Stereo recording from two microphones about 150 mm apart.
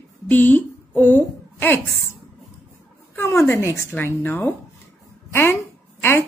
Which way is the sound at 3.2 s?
15° left (ahead or behind).